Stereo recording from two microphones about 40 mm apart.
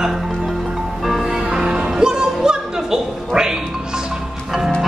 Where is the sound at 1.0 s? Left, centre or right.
Centre.